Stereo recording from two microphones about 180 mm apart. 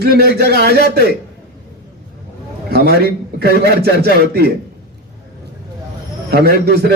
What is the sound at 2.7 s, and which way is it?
A man's voice, 60° right (ahead or behind).